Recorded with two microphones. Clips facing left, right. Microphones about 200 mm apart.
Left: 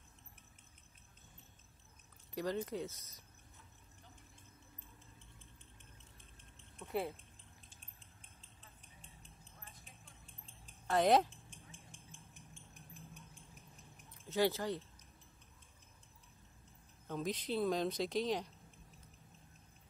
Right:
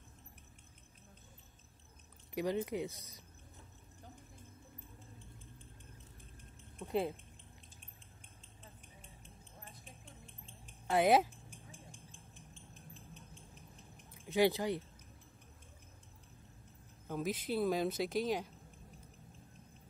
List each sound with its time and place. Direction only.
2.3 s speech: 15° right (ahead or behind)
6.8 s a sound: 15° right (ahead or behind)
10.9 s a woman's voice: 10° right (ahead or behind)
11.5 s a sound: 20° left (ahead or behind)
14.2 s speech: 15° right (ahead or behind)
17.1 s a woman's voice: 5° right (ahead or behind)